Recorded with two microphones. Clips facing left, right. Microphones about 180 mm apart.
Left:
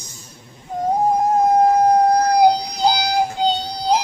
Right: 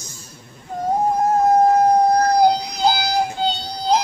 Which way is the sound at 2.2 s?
15° left (ahead or behind).